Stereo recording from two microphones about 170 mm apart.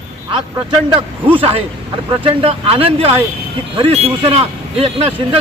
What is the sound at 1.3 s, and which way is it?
A man's voice, 35° right (ahead or behind).